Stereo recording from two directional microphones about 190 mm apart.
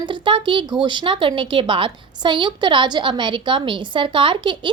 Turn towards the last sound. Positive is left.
turn(degrees=-25)  # may be behind; listen again after turning